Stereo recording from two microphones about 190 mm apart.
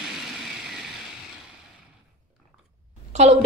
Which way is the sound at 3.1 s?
35° right (ahead or behind).